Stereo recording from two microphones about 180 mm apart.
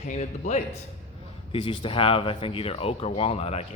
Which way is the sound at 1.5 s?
25° left (ahead or behind).